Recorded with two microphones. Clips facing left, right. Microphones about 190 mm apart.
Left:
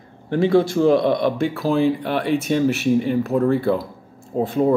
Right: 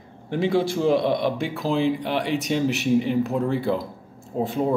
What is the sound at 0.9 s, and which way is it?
Speech, 50° left (ahead or behind).